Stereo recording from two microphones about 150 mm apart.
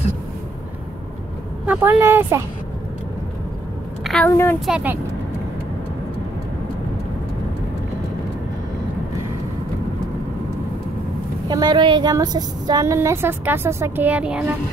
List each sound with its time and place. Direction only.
1.7 s speech: 15° right (ahead or behind)
4.0 s a sound: 5° left (ahead or behind)
4.3 s a woman's voice: 20° left (ahead or behind)
4.6 s speech: 10° right (ahead or behind)
11.4 s a woman's voice: 30° right (ahead or behind); by 14.6 s 10° right (ahead or behind)